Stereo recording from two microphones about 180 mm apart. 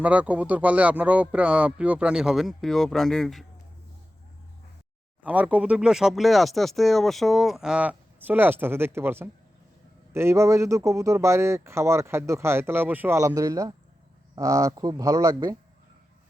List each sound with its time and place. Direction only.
0.0 s speech: 10° right (ahead or behind)
5.2 s speech: 10° right (ahead or behind)